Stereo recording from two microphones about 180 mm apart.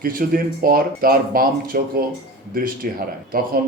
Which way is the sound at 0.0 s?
50° right (ahead or behind).